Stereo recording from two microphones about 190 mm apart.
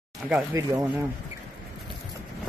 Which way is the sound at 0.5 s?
20° right (ahead or behind).